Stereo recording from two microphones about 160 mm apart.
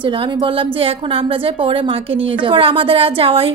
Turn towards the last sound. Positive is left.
turn(degrees=-35)  # may be behind; listen again after turning